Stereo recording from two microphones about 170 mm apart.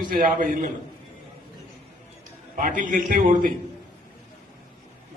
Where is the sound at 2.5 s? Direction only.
50° right (ahead or behind).